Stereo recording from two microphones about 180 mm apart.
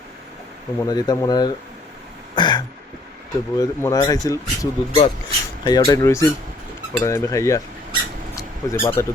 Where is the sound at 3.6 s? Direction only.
20° left (ahead or behind).